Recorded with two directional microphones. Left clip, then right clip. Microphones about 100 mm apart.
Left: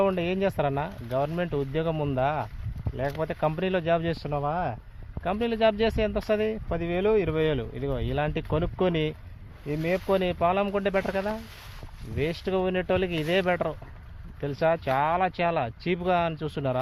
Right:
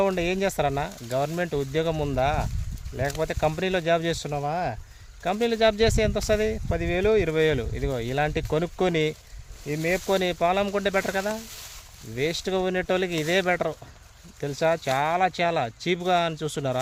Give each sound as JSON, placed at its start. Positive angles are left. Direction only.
{"t": 0.0, "sound": "speech", "side_deg": -50}